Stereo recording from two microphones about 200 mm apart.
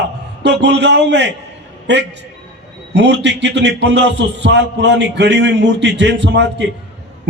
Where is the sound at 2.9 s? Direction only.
60° right (ahead or behind).